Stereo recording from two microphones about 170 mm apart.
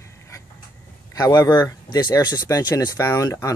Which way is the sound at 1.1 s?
20° left (ahead or behind).